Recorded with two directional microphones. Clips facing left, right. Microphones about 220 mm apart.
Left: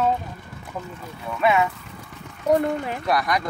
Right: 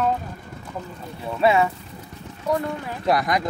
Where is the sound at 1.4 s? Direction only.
30° right (ahead or behind).